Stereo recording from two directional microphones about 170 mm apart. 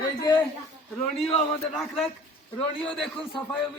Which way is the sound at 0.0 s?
25° left (ahead or behind).